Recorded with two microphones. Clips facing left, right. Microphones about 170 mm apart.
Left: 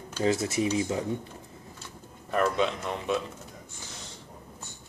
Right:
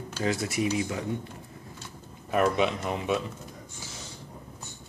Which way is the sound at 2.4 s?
10° right (ahead or behind).